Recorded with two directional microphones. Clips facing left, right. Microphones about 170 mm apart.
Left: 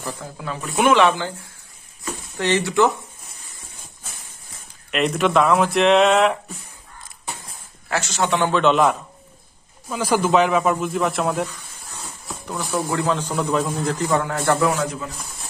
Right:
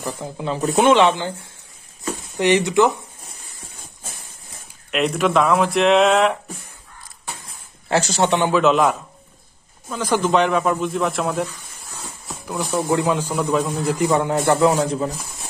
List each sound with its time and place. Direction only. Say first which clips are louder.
0.0 s speech: right 4 dB; 20° right (ahead or behind)
0.6 s speech: right 2 dB; 35° right (ahead or behind)
2.3 s a man's voice: right 3 dB; 15° right (ahead or behind)
4.9 s speech: even; centre (ahead or behind)
7.9 s speech: right 4 dB; 30° right (ahead or behind)
8.3 s a man's voice: right 2 dB; 15° right (ahead or behind)
8.5 s speech: even; centre (ahead or behind)
9.8 s speech: even; 10° left (ahead or behind)
12.3 s a sound: right 3 dB; centre (ahead or behind)
12.7 s a man's voice: right 3 dB; 20° right (ahead or behind)
14.7 s speech: right 4 dB; 35° right (ahead or behind)